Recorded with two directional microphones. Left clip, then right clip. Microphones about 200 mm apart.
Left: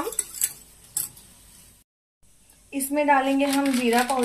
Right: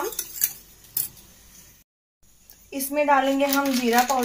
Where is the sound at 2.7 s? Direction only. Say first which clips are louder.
Even; 20° right (ahead or behind).